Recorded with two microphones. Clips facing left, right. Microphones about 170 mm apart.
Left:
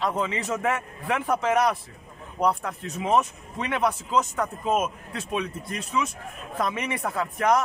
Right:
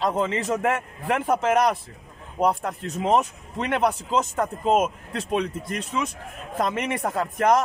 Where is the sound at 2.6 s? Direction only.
45° right (ahead or behind).